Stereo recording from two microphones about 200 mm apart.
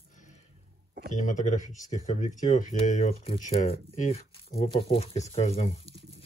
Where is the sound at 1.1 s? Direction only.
40° left (ahead or behind).